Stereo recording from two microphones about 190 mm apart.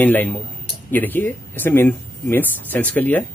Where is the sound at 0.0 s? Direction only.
10° left (ahead or behind).